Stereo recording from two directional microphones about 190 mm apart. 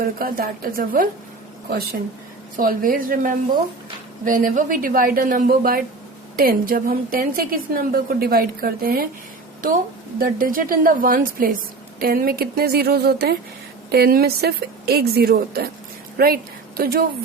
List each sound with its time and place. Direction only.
0.0 s a woman's voice: 50° right (ahead or behind)
10.2 s a woman's voice: 50° right (ahead or behind)